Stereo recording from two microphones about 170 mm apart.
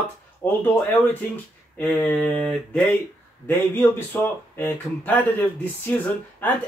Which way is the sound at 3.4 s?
15° left (ahead or behind).